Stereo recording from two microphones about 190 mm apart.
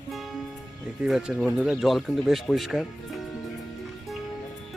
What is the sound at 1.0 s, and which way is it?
Speech, 5° right (ahead or behind).